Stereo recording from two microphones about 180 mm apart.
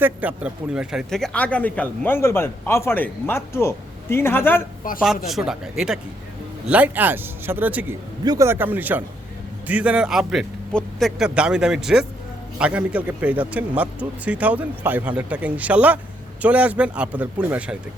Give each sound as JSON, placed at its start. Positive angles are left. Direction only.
{"t": 0.0, "sound": "speech", "side_deg": -10}
{"t": 4.8, "sound": "speech", "side_deg": 50}
{"t": 5.2, "sound": "a man's voice", "side_deg": 0}
{"t": 8.2, "sound": "a man's voice", "side_deg": -20}